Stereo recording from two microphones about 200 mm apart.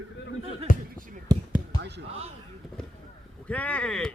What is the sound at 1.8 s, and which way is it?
Basketball bounce, 60° right (ahead or behind).